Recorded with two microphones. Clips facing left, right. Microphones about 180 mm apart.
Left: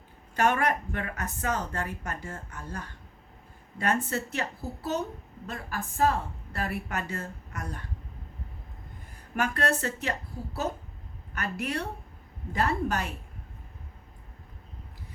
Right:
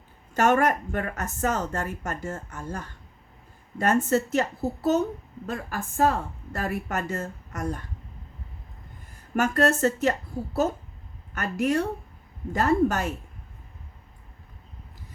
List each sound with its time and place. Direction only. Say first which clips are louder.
0.3 s speech: right 4 dB; 45° right (ahead or behind)
9.3 s speech: right 6 dB; 45° right (ahead or behind)